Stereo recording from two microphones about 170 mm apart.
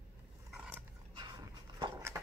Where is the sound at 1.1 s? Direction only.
25° right (ahead or behind).